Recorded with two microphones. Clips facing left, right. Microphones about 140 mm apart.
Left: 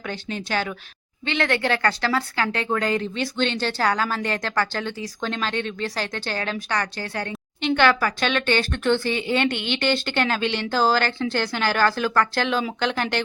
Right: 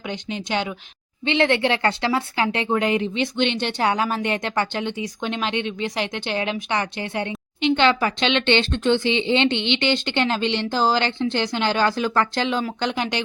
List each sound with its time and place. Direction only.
0.1 s speech: 15° right (ahead or behind)